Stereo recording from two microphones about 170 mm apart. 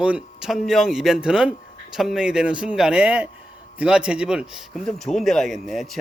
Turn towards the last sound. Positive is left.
turn(degrees=0)  # may be behind; listen again after turning